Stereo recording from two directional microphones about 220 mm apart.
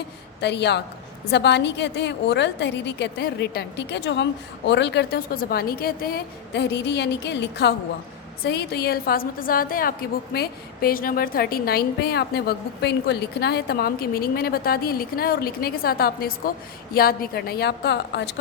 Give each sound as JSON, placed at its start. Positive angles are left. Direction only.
{"t": 0.4, "sound": "a woman's voice", "side_deg": 50}